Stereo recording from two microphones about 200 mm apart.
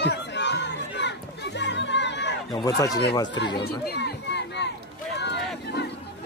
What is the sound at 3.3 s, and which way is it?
Speech, 55° left (ahead or behind).